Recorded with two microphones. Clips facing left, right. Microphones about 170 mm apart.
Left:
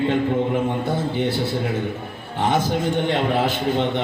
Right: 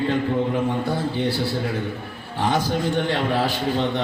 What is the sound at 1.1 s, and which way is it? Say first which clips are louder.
A man's voice: left 1 dB; 20° left (ahead or behind).